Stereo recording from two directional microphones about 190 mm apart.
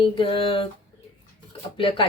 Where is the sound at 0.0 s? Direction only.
30° left (ahead or behind).